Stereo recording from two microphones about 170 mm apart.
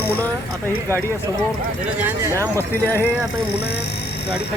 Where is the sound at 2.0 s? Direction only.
15° right (ahead or behind).